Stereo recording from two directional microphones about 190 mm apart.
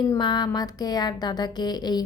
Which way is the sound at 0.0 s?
20° left (ahead or behind).